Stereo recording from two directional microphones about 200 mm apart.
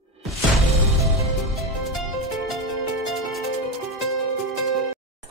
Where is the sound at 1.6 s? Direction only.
Centre (ahead or behind).